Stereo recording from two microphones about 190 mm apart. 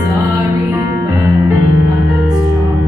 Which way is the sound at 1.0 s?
15° right (ahead or behind).